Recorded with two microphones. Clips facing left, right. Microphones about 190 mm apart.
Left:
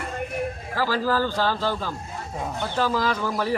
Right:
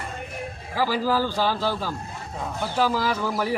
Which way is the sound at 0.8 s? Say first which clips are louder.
Right 1 dB; 10° right (ahead or behind).